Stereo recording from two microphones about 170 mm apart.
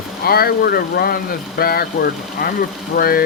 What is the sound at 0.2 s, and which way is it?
Speech, 65° left (ahead or behind).